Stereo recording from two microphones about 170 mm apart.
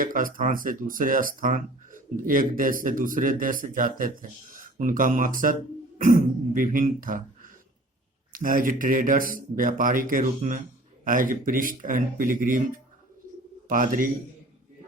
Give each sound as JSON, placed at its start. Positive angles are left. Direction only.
{"t": 0.0, "sound": "speech", "side_deg": -55}
{"t": 8.3, "sound": "speech", "side_deg": -55}